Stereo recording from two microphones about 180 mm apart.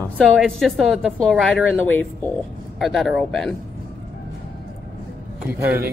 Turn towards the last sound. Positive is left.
turn(degrees=-15)  # may be behind; listen again after turning